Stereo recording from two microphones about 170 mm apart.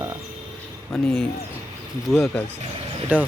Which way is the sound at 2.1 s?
15° left (ahead or behind).